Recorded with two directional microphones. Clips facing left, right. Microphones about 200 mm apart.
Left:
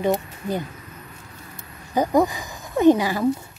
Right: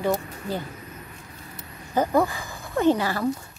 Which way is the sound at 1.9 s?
15° left (ahead or behind).